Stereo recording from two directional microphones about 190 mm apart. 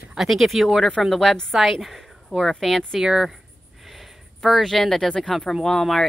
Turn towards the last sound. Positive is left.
turn(degrees=0)  # may be behind; listen again after turning